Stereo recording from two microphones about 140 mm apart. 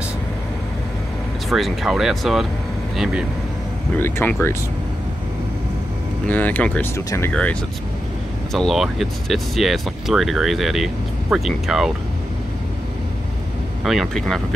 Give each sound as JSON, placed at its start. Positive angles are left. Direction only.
{"t": 1.5, "sound": "speech", "side_deg": 0}
{"t": 3.9, "sound": "speech", "side_deg": 15}
{"t": 6.2, "sound": "speech", "side_deg": 10}
{"t": 8.5, "sound": "speech", "side_deg": 0}
{"t": 13.8, "sound": "speech", "side_deg": 0}